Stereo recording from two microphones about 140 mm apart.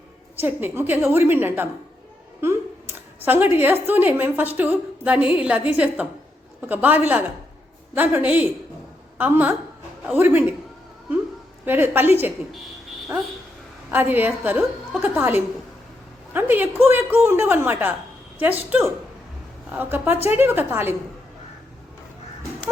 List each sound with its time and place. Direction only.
0.4 s a woman's voice: 15° right (ahead or behind)
3.2 s a woman's voice: 15° right (ahead or behind)
11.6 s a woman's voice: 15° right (ahead or behind)
13.9 s a woman's voice: 15° right (ahead or behind)